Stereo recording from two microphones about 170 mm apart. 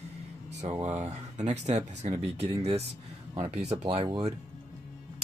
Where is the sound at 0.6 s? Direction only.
40° right (ahead or behind).